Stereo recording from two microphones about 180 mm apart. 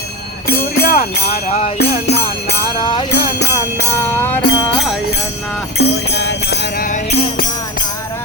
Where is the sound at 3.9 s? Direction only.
10° left (ahead or behind).